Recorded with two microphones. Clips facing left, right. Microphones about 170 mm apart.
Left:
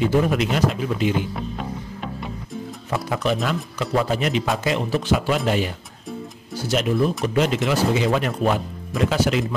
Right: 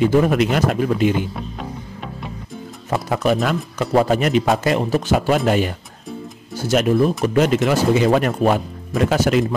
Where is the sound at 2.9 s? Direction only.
50° right (ahead or behind).